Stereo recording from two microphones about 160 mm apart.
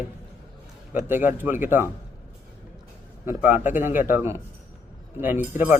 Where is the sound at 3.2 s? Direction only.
10° right (ahead or behind).